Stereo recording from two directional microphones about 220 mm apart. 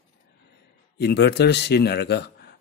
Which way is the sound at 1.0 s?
50° left (ahead or behind).